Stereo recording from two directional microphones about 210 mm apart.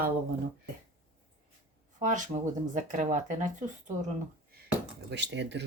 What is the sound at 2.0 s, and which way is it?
Speech, 35° right (ahead or behind).